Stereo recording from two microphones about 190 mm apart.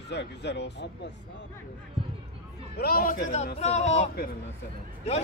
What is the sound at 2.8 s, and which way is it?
A man's voice, 50° left (ahead or behind).